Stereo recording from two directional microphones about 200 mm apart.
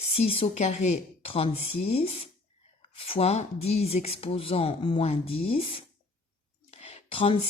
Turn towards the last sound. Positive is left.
turn(degrees=25)  # may be behind; listen again after turning